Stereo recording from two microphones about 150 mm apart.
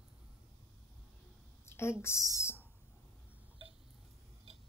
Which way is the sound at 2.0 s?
15° left (ahead or behind).